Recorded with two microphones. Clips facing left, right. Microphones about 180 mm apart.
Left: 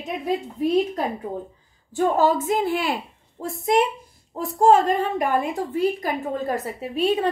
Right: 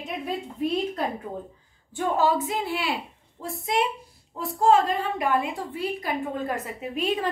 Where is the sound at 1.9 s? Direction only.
45° left (ahead or behind).